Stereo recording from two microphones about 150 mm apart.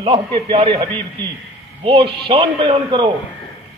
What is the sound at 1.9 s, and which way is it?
A man's voice, 35° right (ahead or behind).